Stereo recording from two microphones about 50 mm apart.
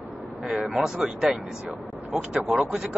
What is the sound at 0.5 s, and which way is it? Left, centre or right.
Speech, centre.